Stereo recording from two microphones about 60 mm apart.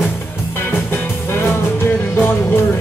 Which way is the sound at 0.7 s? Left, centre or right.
Left.